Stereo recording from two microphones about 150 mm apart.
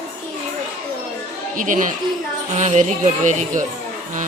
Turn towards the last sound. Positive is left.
turn(degrees=-55)  # may be behind; listen again after turning